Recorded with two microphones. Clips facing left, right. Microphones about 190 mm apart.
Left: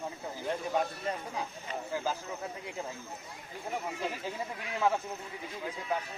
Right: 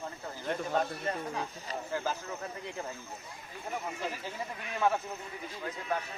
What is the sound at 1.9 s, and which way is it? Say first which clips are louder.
Speech: even; 10° left (ahead or behind).